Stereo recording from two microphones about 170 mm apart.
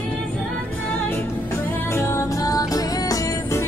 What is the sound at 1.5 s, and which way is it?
Music, 15° left (ahead or behind).